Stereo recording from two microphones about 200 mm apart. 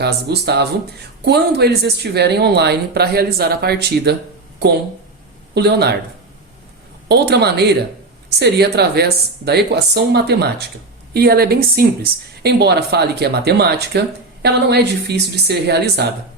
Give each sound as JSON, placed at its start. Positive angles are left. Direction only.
{"t": 0.0, "sound": "speech", "side_deg": -55}
{"t": 5.5, "sound": "speech", "side_deg": -55}
{"t": 7.1, "sound": "a woman's voice", "side_deg": -55}